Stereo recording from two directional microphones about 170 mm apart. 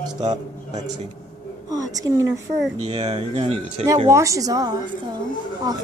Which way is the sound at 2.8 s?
35° right (ahead or behind).